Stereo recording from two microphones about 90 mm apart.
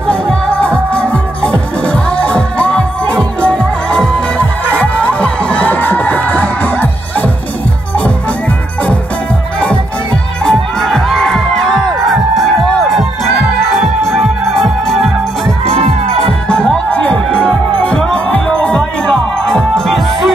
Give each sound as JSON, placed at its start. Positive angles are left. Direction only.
{"t": 0.0, "sound": "music", "side_deg": 10}
{"t": 10.4, "sound": "music", "side_deg": 0}